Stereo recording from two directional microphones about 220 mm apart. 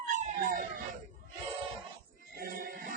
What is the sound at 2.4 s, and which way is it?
Music, 40° right (ahead or behind).